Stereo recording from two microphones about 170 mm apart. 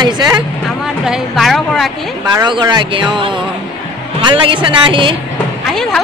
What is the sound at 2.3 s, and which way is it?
Speech, 25° right (ahead or behind).